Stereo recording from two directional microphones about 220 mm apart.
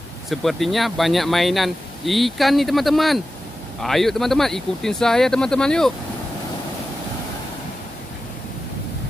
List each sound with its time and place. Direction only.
0.3 s speech: centre (ahead or behind)